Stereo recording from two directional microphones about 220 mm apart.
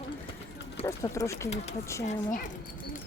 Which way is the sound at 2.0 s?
35° left (ahead or behind).